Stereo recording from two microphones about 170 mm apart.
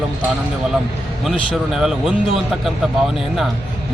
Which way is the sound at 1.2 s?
Centre (ahead or behind).